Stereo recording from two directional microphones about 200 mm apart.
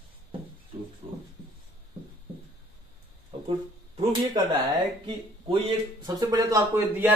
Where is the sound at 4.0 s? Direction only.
20° right (ahead or behind).